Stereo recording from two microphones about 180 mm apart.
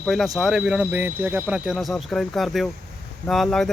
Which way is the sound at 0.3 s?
Centre (ahead or behind).